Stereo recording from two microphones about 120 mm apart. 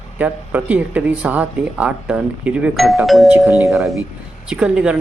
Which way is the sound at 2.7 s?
Centre (ahead or behind).